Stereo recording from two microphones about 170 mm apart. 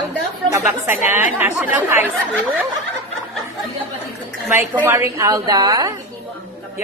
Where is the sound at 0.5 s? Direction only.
15° right (ahead or behind).